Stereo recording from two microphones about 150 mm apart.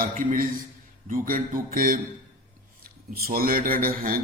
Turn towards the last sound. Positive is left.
turn(degrees=-70)  # may be behind; listen again after turning